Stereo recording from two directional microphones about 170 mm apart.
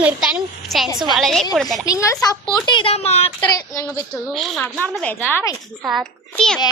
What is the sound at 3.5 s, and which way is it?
Speech, 20° left (ahead or behind).